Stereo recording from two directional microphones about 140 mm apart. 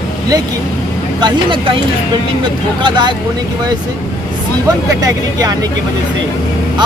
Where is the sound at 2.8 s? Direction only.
35° right (ahead or behind).